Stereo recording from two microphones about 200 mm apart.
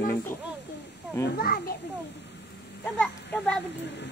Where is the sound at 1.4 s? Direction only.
50° left (ahead or behind).